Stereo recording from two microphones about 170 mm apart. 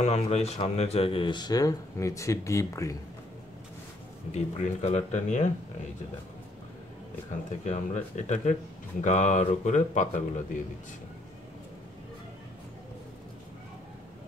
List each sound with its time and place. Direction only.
0.0 s speech: 40° left (ahead or behind); by 3.0 s 20° left (ahead or behind)
4.3 s speech: 45° left (ahead or behind)
7.6 s speech: 45° left (ahead or behind)